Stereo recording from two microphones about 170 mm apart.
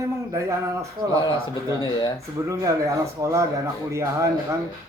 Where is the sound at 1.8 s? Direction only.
25° left (ahead or behind).